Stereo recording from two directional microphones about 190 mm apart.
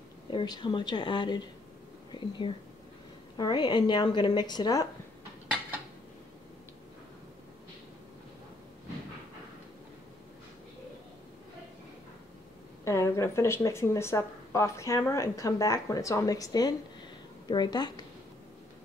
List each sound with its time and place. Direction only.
0.3 s speech: 25° left (ahead or behind)
12.8 s speech: 15° left (ahead or behind)